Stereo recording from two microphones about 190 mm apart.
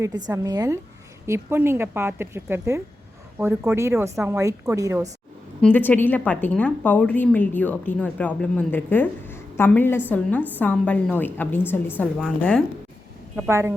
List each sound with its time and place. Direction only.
0.3 s a woman's voice: 20° right (ahead or behind)
5.6 s a woman's voice: 10° left (ahead or behind)
13.3 s speech: 15° right (ahead or behind)